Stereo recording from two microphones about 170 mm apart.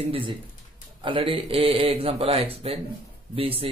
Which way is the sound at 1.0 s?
30° right (ahead or behind).